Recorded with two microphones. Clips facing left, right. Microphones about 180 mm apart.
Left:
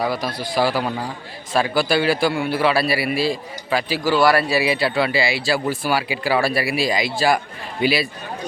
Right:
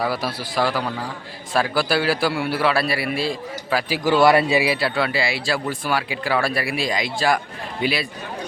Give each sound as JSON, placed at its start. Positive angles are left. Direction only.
{"t": 0.0, "sound": "speech", "side_deg": -5}
{"t": 0.6, "sound": "a man's voice", "side_deg": 10}
{"t": 3.9, "sound": "a man's voice", "side_deg": -20}
{"t": 4.6, "sound": "speech", "side_deg": -5}